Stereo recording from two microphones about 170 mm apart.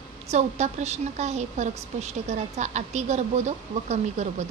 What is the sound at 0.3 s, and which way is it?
A woman's voice, 40° right (ahead or behind).